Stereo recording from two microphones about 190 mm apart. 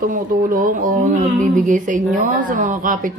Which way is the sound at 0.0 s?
45° right (ahead or behind).